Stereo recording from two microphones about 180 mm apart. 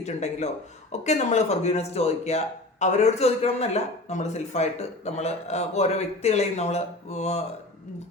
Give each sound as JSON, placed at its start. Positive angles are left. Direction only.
{"t": 0.0, "sound": "speech", "side_deg": 40}